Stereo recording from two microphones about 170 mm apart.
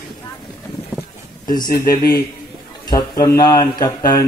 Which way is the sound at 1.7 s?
65° left (ahead or behind).